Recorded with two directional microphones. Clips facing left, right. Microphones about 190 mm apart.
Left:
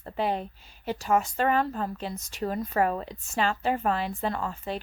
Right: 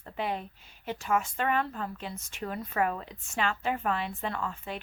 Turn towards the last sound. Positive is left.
turn(degrees=35)  # may be behind; listen again after turning